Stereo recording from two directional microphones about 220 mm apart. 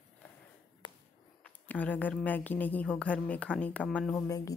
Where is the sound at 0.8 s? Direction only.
20° left (ahead or behind).